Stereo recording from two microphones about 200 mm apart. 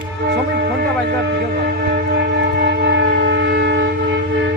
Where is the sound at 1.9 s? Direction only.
55° right (ahead or behind).